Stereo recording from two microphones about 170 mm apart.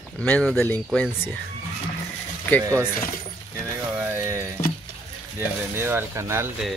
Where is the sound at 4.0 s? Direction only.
15° right (ahead or behind).